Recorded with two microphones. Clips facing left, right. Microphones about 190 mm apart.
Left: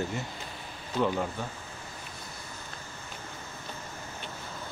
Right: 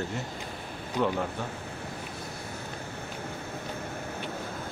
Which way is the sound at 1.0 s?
15° right (ahead or behind).